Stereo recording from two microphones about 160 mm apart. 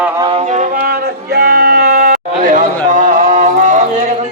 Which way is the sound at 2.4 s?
60° right (ahead or behind).